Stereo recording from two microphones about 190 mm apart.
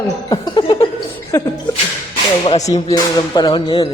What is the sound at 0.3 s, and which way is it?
Chuckle, 20° left (ahead or behind).